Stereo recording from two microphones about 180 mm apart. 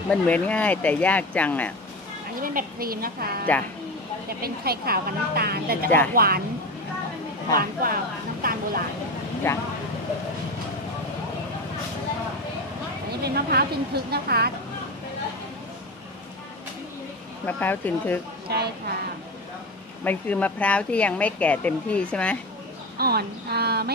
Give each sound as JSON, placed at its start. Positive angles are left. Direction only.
{"t": 0.1, "sound": "speech", "side_deg": 10}
{"t": 2.4, "sound": "a woman's voice", "side_deg": -55}
{"t": 7.5, "sound": "speech", "side_deg": -50}
{"t": 9.5, "sound": "speech", "side_deg": 15}
{"t": 13.2, "sound": "a woman's voice", "side_deg": -60}
{"t": 17.5, "sound": "speech", "side_deg": 10}
{"t": 18.5, "sound": "a woman's voice", "side_deg": -65}
{"t": 20.0, "sound": "speech", "side_deg": 10}
{"t": 22.9, "sound": "a woman's voice", "side_deg": -60}